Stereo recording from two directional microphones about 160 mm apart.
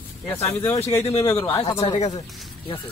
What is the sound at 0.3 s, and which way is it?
Speech, 15° left (ahead or behind).